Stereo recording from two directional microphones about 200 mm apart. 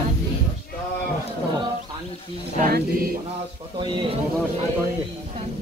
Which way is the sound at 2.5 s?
45° right (ahead or behind).